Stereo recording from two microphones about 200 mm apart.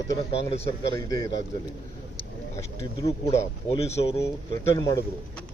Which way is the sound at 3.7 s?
30° left (ahead or behind).